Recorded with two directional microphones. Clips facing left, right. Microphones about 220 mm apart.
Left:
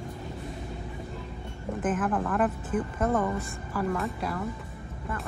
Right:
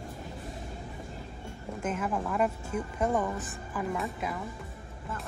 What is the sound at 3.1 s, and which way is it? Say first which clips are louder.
Speech: left 3 dB; centre (ahead or behind).